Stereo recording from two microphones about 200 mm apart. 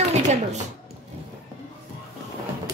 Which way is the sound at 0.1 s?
35° right (ahead or behind).